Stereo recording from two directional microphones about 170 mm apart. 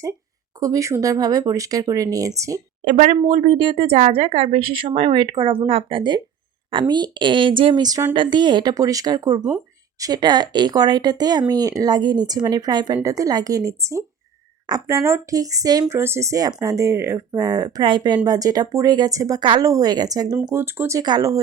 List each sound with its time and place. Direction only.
0.6 s speech: 20° right (ahead or behind)
2.8 s speech: 45° right (ahead or behind); by 21.3 s 20° right (ahead or behind)